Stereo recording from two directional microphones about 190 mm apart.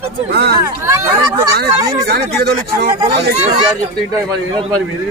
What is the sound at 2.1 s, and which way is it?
Speech, 55° right (ahead or behind).